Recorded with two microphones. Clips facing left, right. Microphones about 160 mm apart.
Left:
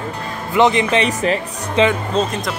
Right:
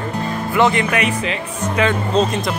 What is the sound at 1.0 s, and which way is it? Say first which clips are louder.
Speech: left 3 dB; 40° left (ahead or behind).